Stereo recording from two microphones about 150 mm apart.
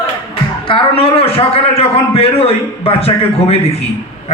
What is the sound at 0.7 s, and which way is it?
A man's voice, 35° left (ahead or behind).